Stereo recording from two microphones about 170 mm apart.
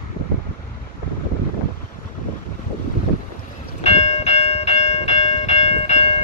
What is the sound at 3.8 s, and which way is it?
Train, 40° left (ahead or behind).